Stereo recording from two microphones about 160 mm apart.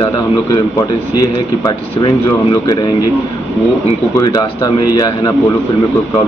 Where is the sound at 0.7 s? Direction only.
25° left (ahead or behind).